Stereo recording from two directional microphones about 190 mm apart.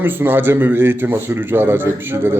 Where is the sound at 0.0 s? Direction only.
10° right (ahead or behind).